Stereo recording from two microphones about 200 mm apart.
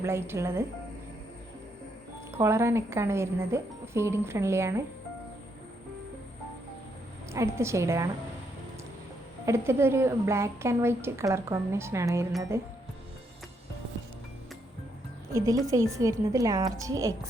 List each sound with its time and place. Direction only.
0.0 s a woman's voice: 15° right (ahead or behind)
2.3 s a woman's voice: 15° right (ahead or behind)
7.3 s a woman's voice: 15° right (ahead or behind)
9.5 s a woman's voice: 15° right (ahead or behind)
15.3 s a woman's voice: 15° right (ahead or behind)